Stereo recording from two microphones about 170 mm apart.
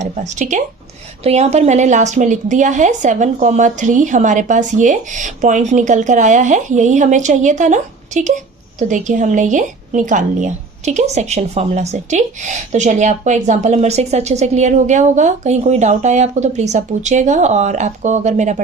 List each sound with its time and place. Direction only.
0.0 s speech: 45° right (ahead or behind)